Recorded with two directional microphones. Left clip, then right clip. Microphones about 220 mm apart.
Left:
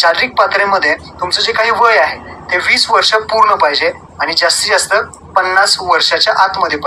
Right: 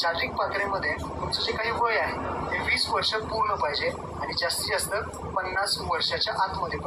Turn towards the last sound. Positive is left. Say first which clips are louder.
# left 16 dB
turn(degrees=45)  # may be behind; listen again after turning